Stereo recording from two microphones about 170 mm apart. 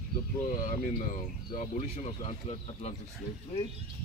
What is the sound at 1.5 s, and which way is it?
Speech, 50° left (ahead or behind).